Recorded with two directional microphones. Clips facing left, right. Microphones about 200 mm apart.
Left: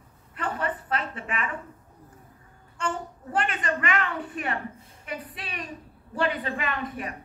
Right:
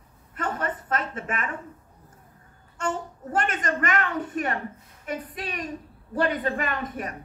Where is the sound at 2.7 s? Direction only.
45° right (ahead or behind).